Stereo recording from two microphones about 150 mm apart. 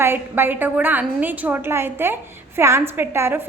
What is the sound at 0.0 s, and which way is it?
A woman's voice, 15° right (ahead or behind).